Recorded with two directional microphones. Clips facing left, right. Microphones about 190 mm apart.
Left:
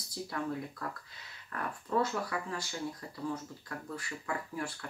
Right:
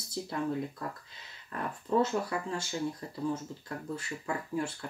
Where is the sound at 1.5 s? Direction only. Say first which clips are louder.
Right 4 dB; 20° right (ahead or behind).